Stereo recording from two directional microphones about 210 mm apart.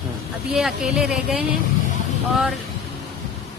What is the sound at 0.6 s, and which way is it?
Speech, centre (ahead or behind).